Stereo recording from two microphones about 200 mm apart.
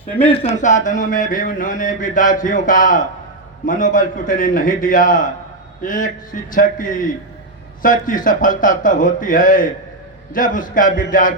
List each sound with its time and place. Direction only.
0.5 s mantra: 40° left (ahead or behind)